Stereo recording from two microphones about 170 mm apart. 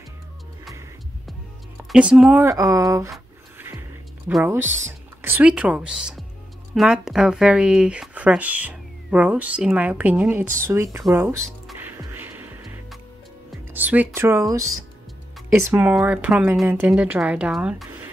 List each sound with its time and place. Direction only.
1.9 s speech: 5° right (ahead or behind)
2.4 s speech: 20° right (ahead or behind)
4.5 s speech: 15° right (ahead or behind)
11.8 s music: 10° right (ahead or behind)
13.7 s speech: 10° right (ahead or behind)
15.6 s speech: 10° right (ahead or behind)